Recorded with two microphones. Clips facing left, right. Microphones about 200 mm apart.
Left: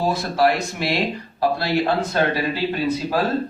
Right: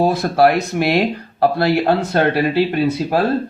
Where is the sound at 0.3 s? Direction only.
60° right (ahead or behind).